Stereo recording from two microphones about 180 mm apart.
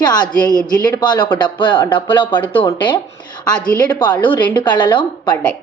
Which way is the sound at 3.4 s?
5° left (ahead or behind).